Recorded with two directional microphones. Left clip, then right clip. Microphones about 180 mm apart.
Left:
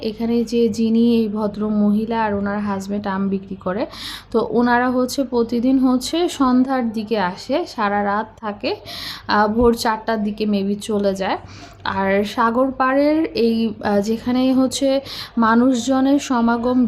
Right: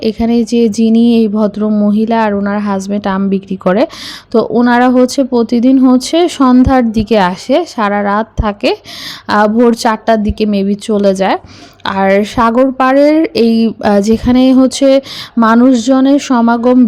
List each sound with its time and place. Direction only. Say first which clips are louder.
0.0 s speech: right 8 dB; 45° right (ahead or behind)
4.3 s speech: right 7 dB; 30° right (ahead or behind)